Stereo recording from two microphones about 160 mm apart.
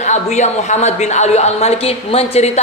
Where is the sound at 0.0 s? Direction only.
45° left (ahead or behind).